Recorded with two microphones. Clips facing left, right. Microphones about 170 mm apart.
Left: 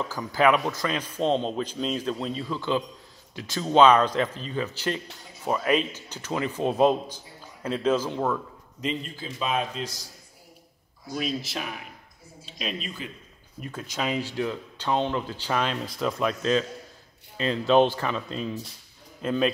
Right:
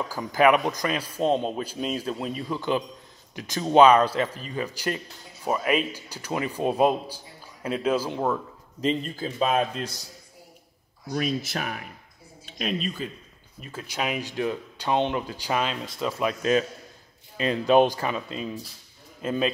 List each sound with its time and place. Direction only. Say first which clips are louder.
0.1 s a man's voice: right 2 dB; 15° right (ahead or behind)
8.8 s a man's voice: right 5 dB; 45° right (ahead or behind)
11.1 s a man's voice: right 3 dB; 50° right (ahead or behind)
13.7 s a man's voice: even; 10° right (ahead or behind)
15.7 s a man's voice: left 1 dB; centre (ahead or behind)